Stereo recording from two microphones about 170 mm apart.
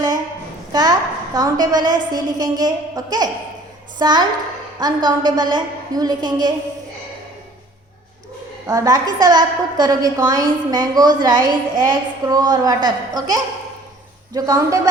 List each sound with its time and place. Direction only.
0.7 s a woman's voice: 25° right (ahead or behind)
8.6 s a woman's voice: 20° right (ahead or behind)